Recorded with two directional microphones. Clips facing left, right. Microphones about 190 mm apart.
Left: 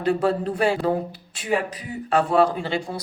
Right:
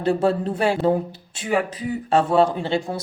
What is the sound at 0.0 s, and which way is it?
A man's voice, 25° right (ahead or behind).